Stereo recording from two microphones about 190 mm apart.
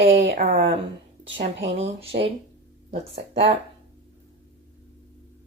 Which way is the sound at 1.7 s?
30° right (ahead or behind).